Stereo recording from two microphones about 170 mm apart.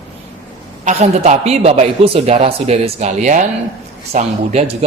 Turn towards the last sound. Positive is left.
turn(degrees=-40)  # may be behind; listen again after turning